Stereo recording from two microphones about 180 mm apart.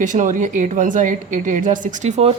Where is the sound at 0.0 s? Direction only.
45° right (ahead or behind).